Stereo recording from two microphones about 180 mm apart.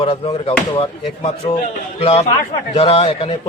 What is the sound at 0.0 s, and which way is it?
A man's voice, 35° left (ahead or behind).